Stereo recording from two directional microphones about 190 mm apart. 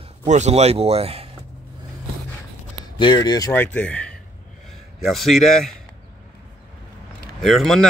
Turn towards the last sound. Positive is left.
turn(degrees=0)  # may be behind; listen again after turning